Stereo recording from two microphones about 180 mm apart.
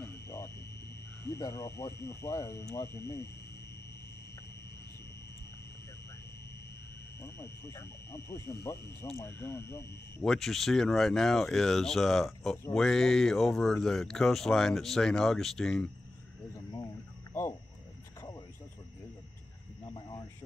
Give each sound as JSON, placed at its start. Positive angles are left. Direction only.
{"t": 0.0, "sound": "wild animals", "side_deg": 15}
{"t": 1.3, "sound": "speech", "side_deg": 15}
{"t": 7.2, "sound": "speech", "side_deg": 15}
{"t": 10.2, "sound": "speech", "side_deg": 0}
{"t": 16.7, "sound": "cricket", "side_deg": 15}
{"t": 19.8, "sound": "speech", "side_deg": 20}